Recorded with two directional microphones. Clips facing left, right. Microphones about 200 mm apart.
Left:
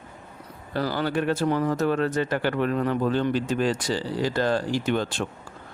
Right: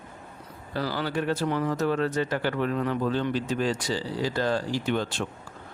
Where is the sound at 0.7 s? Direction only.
50° left (ahead or behind).